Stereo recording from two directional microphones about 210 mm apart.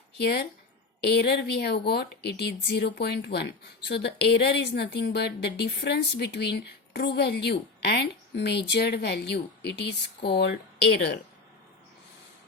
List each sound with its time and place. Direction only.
0.2 s speech: 50° left (ahead or behind)